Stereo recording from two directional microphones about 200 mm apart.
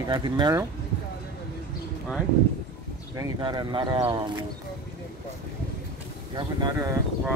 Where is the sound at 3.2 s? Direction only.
20° right (ahead or behind).